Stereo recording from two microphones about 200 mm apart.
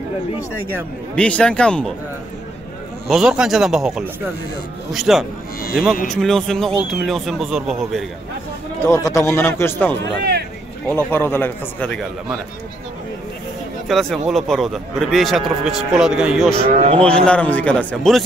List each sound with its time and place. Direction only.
1.1 s a man's voice: 5° left (ahead or behind)
3.1 s a man's voice: 5° right (ahead or behind)
8.8 s speech: 15° left (ahead or behind)
11.1 s speech: 10° left (ahead or behind)
13.8 s a man's voice: centre (ahead or behind)
16.6 s speech: 30° right (ahead or behind)
17.0 s speech: 5° left (ahead or behind)